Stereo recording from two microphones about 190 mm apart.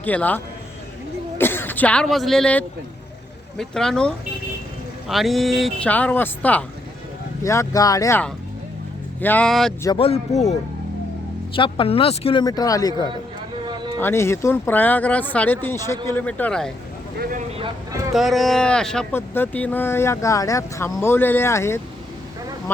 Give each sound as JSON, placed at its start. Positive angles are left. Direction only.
{"t": 0.0, "sound": "speech", "side_deg": 10}
{"t": 9.8, "sound": "speech", "side_deg": 25}
{"t": 11.5, "sound": "speech", "side_deg": 25}
{"t": 17.2, "sound": "speech", "side_deg": -50}
{"t": 18.1, "sound": "speech", "side_deg": 0}